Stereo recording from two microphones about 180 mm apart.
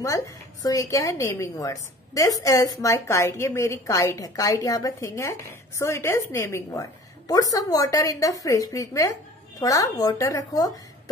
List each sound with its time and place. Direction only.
0.0 s a woman's voice: 15° left (ahead or behind)